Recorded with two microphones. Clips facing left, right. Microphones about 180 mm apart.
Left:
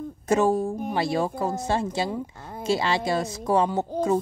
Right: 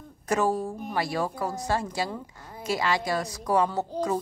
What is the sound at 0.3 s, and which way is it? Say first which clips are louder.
Speech: left 4 dB; 25° left (ahead or behind).